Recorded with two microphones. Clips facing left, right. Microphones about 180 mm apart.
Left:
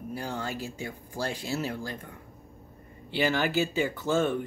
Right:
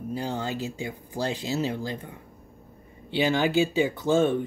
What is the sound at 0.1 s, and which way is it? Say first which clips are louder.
Speech: right 4 dB; 20° right (ahead or behind).